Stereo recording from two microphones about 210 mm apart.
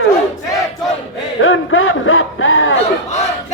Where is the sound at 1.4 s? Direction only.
70° left (ahead or behind).